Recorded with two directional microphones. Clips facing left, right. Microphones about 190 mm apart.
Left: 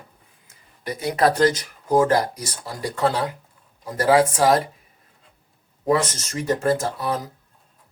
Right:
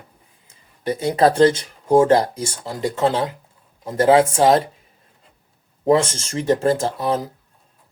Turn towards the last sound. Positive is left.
turn(degrees=-25)  # may be behind; listen again after turning